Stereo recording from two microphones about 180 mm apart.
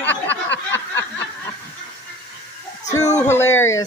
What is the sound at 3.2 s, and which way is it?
Speech, 15° left (ahead or behind).